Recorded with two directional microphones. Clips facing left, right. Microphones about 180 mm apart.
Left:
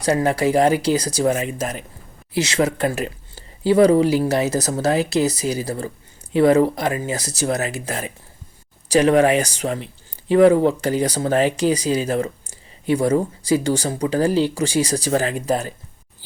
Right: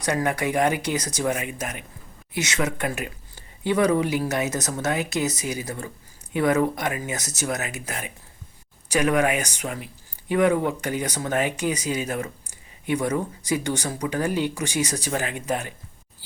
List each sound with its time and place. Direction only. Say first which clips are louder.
0.0 s speech: left 6 dB; 30° left (ahead or behind)